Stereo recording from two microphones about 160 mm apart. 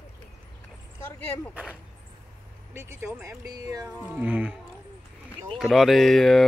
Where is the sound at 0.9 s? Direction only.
15° left (ahead or behind).